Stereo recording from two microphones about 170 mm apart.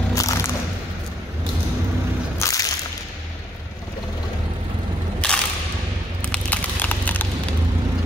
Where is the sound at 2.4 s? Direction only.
20° left (ahead or behind).